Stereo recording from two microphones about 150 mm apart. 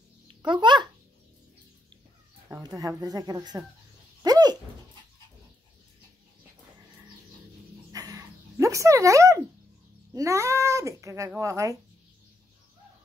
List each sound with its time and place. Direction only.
0.5 s a child's voice: 30° right (ahead or behind)
2.5 s speech: 25° right (ahead or behind)
4.2 s dog: 25° right (ahead or behind)
7.9 s dog: 25° right (ahead or behind)
10.1 s speech: 20° right (ahead or behind)